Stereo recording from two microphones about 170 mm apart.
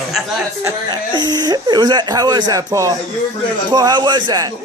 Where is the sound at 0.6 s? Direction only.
25° right (ahead or behind).